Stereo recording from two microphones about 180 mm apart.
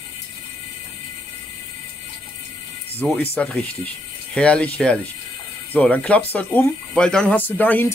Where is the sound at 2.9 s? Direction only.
10° left (ahead or behind).